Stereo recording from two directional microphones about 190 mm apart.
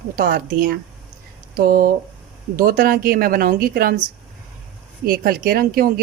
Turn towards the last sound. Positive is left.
turn(degrees=-50)  # may be behind; listen again after turning